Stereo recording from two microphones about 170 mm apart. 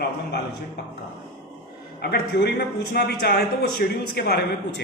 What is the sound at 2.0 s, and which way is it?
A man's voice, 70° left (ahead or behind).